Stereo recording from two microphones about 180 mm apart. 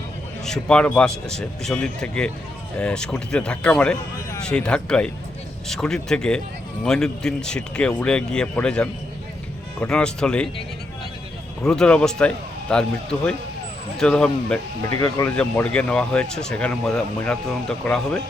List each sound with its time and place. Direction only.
0.4 s speech: 5° left (ahead or behind)
11.6 s speech: 5° left (ahead or behind)